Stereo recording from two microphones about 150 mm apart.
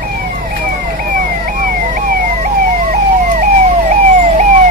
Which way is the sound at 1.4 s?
65° right (ahead or behind).